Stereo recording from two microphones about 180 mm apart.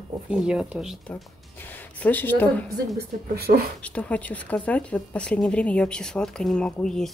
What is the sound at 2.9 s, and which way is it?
Speech, 60° right (ahead or behind).